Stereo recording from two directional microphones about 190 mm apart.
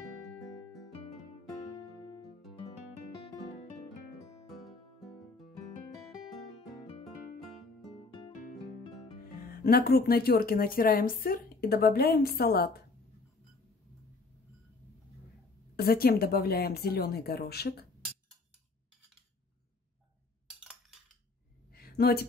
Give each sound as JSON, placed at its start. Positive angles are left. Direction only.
{"t": 0.4, "sound": "music", "side_deg": 0}
{"t": 2.0, "sound": "music", "side_deg": 25}
{"t": 4.5, "sound": "music", "side_deg": 0}
{"t": 9.2, "sound": "speech", "side_deg": 50}
{"t": 15.7, "sound": "speech", "side_deg": 55}
{"t": 21.7, "sound": "a sound", "side_deg": 55}